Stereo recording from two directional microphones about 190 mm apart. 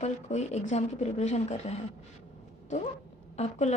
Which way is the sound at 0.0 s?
35° left (ahead or behind).